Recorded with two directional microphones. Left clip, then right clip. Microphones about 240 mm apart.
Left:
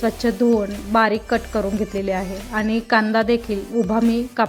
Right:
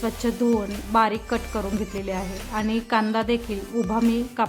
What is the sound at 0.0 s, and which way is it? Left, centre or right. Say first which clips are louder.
Speech: left 5 dB; centre.